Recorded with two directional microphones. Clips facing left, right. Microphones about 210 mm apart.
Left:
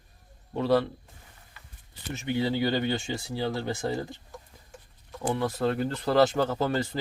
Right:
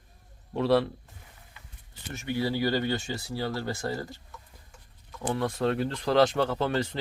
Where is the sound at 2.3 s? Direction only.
20° left (ahead or behind).